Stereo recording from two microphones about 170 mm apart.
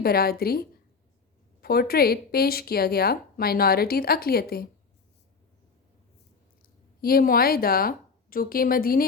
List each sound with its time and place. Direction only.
0.0 s speech: 65° left (ahead or behind)
6.6 s speech: 60° left (ahead or behind)